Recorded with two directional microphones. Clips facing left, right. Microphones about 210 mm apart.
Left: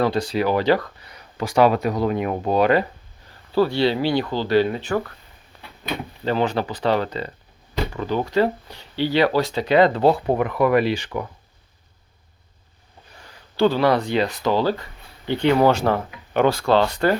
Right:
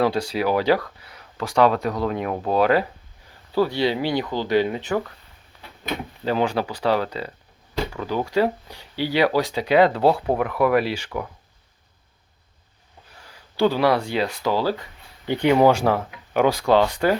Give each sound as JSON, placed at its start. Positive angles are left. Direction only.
{"t": 0.0, "sound": "speech", "side_deg": -10}
{"t": 3.5, "sound": "speech", "side_deg": -15}
{"t": 6.2, "sound": "speech", "side_deg": -10}
{"t": 13.1, "sound": "speech", "side_deg": -5}